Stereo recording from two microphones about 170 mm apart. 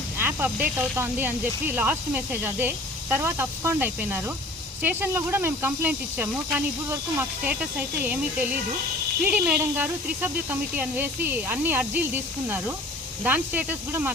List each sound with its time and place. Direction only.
0.2 s speech: 10° right (ahead or behind)